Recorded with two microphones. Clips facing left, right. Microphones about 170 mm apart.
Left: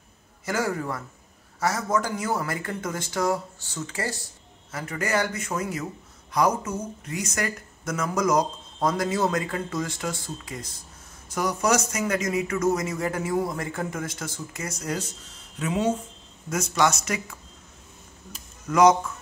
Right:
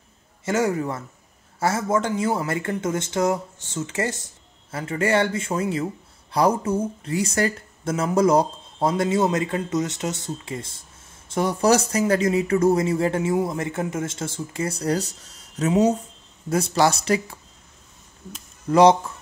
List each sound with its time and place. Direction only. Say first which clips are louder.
0.5 s speech: right 5 dB; 25° right (ahead or behind)
18.7 s speech: right 3 dB; 30° right (ahead or behind)